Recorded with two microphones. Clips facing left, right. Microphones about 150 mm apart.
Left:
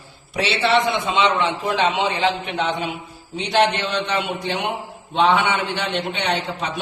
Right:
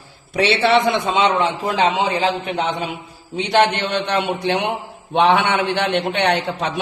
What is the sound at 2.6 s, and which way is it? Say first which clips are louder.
Speech: right 1 dB; 45° right (ahead or behind).